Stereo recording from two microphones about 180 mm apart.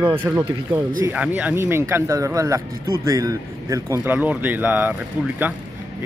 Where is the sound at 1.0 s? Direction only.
10° right (ahead or behind).